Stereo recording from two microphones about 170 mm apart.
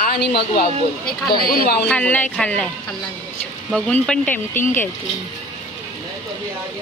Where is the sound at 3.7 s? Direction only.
5° left (ahead or behind).